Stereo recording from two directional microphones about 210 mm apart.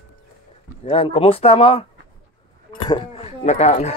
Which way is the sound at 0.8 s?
25° left (ahead or behind).